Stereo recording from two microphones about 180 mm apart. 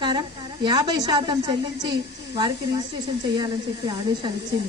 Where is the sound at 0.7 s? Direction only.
25° right (ahead or behind).